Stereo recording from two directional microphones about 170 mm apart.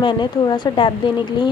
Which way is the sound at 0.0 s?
25° left (ahead or behind).